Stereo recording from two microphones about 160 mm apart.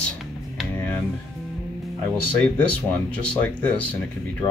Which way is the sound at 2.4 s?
10° left (ahead or behind).